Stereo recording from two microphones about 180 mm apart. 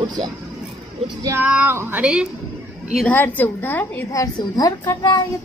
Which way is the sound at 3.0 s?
10° left (ahead or behind).